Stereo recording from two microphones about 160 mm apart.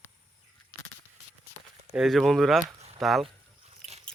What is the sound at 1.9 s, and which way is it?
Speech, centre (ahead or behind).